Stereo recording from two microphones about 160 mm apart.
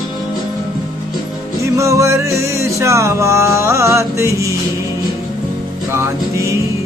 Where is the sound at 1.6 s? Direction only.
20° right (ahead or behind).